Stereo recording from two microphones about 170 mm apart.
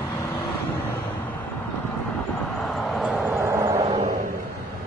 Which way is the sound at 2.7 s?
Centre (ahead or behind).